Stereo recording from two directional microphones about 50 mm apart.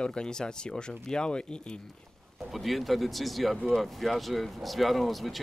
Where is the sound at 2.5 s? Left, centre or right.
Centre.